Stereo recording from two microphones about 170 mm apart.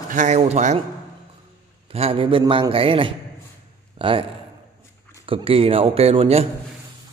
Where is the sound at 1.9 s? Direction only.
35° right (ahead or behind).